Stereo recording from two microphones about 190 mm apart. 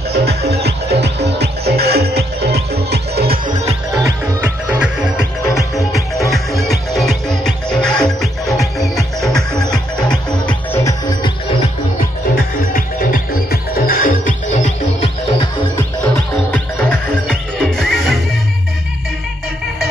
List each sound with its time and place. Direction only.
0.1 s music: 55° right (ahead or behind)
3.9 s music: 15° right (ahead or behind); by 11.3 s 20° left (ahead or behind)
12.4 s music: 50° left (ahead or behind)
16.5 s music: 10° left (ahead or behind)